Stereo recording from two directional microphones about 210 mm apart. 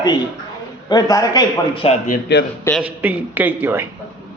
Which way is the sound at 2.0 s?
45° left (ahead or behind).